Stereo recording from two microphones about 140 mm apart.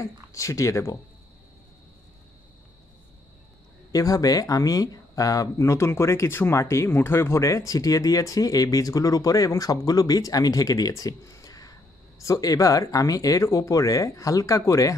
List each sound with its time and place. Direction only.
0.0 s speech: 25° left (ahead or behind)
3.9 s speech: 25° left (ahead or behind)